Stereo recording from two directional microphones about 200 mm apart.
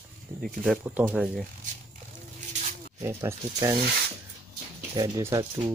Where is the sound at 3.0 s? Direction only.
15° right (ahead or behind).